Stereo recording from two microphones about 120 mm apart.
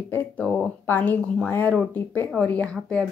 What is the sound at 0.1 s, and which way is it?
A woman's voice, 15° left (ahead or behind).